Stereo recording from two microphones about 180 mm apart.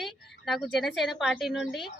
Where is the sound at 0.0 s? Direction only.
Centre (ahead or behind).